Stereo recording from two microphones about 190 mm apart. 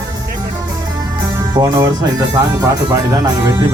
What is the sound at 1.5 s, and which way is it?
Speech, 20° right (ahead or behind).